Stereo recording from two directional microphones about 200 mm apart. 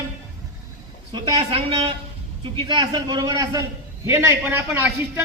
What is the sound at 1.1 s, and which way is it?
A man's voice, 25° right (ahead or behind).